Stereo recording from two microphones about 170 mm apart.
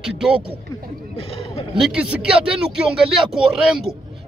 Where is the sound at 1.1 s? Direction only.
35° left (ahead or behind).